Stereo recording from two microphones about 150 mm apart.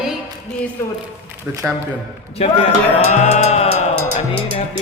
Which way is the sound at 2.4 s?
45° left (ahead or behind).